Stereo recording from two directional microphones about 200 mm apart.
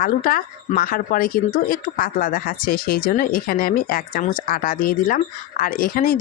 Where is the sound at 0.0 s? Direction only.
45° left (ahead or behind).